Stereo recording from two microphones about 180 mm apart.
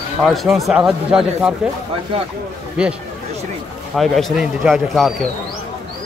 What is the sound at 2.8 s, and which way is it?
Speech, 5° right (ahead or behind).